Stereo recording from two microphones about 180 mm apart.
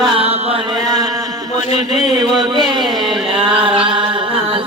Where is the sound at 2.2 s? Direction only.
25° right (ahead or behind).